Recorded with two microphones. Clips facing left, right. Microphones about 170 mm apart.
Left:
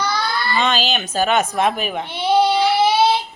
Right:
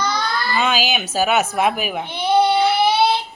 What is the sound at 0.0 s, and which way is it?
Speech, centre (ahead or behind).